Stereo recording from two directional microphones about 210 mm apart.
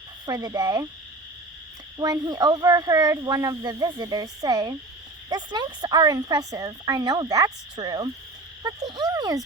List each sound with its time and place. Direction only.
0.3 s speech: 20° right (ahead or behind)
2.0 s a woman's voice: 20° right (ahead or behind)